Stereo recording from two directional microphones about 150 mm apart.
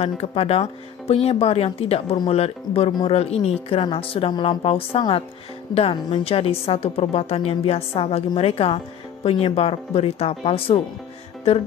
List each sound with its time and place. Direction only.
0.0 s a woman's voice: 40° left (ahead or behind)